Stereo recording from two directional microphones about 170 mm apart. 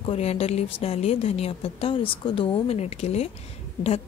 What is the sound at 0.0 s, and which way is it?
A woman's voice, 35° left (ahead or behind).